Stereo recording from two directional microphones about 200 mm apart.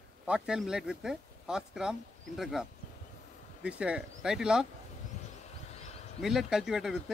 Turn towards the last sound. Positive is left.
turn(degrees=0)  # may be behind; listen again after turning